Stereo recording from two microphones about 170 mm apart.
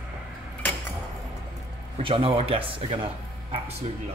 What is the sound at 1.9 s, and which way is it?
Speech, 35° right (ahead or behind).